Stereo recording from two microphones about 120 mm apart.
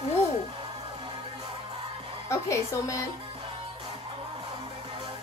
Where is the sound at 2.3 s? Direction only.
25° left (ahead or behind).